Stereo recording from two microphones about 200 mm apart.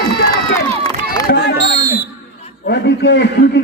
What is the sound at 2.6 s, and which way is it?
Speech, 60° left (ahead or behind).